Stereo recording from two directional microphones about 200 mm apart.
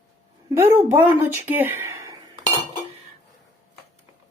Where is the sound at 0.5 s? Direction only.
15° right (ahead or behind).